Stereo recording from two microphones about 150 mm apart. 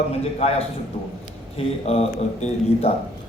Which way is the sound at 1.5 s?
45° left (ahead or behind).